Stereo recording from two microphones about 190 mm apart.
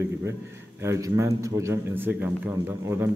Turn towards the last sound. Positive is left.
turn(degrees=-10)  # may be behind; listen again after turning